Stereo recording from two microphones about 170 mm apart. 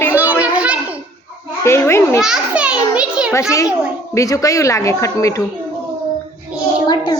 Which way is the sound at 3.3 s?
20° left (ahead or behind).